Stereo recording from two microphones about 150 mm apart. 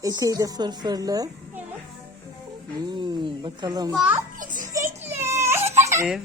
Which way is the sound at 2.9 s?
30° right (ahead or behind).